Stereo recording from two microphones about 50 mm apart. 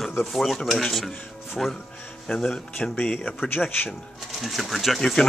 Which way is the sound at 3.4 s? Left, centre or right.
Left.